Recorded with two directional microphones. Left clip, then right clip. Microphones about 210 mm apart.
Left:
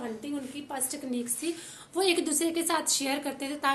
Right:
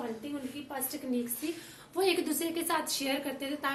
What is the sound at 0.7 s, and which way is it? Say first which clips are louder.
A woman's voice: left 1 dB; 40° left (ahead or behind).